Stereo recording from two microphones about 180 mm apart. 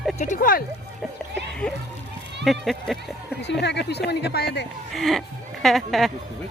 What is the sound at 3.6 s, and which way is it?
Speech, 70° left (ahead or behind).